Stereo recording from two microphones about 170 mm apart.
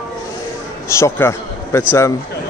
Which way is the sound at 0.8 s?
15° left (ahead or behind).